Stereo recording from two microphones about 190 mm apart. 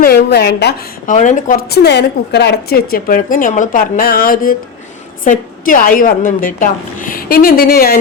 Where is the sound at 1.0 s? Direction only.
40° left (ahead or behind).